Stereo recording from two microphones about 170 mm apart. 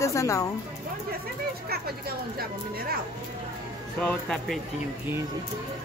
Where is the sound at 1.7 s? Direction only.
65° right (ahead or behind).